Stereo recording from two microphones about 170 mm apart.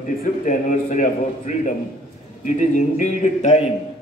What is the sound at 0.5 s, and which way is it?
A man's voice, 50° left (ahead or behind).